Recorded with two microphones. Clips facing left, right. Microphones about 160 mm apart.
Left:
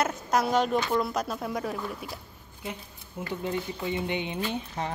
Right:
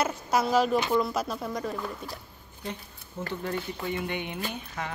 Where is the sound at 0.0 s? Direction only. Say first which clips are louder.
Even; 5° right (ahead or behind).